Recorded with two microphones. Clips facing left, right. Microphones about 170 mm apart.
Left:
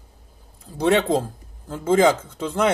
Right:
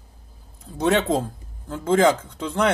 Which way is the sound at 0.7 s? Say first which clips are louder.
Left 2 dB; centre (ahead or behind).